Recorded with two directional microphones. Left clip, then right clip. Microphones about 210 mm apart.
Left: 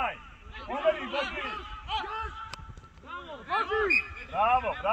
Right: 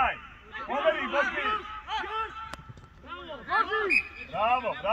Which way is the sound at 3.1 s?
5° right (ahead or behind).